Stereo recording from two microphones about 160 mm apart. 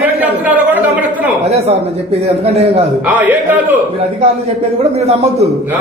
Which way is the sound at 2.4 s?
40° right (ahead or behind).